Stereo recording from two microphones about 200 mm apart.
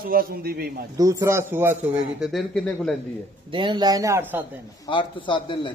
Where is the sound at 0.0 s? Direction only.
50° right (ahead or behind).